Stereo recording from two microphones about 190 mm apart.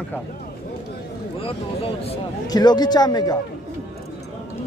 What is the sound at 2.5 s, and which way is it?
Speech, 20° left (ahead or behind).